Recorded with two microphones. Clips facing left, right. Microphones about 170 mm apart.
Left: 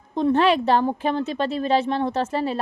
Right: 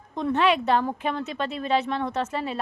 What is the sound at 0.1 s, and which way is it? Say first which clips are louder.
A woman's voice: left 4 dB; 30° left (ahead or behind).